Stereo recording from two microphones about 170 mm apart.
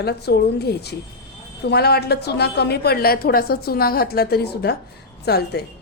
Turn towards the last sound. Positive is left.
turn(degrees=70)  # may be behind; listen again after turning